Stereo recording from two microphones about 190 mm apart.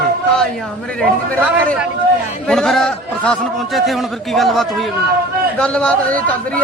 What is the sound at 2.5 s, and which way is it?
A man's voice, centre (ahead or behind).